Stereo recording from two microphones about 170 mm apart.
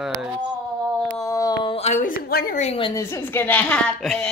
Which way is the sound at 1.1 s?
20° left (ahead or behind).